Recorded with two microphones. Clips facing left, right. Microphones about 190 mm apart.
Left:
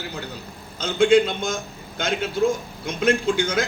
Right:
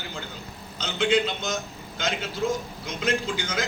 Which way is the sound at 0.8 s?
50° left (ahead or behind).